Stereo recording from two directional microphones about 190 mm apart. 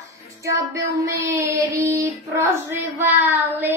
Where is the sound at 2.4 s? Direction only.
10° right (ahead or behind).